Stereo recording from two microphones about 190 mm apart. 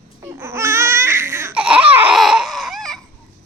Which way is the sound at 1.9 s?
5° right (ahead or behind).